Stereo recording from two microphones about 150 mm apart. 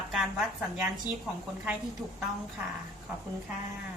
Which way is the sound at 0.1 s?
Centre (ahead or behind).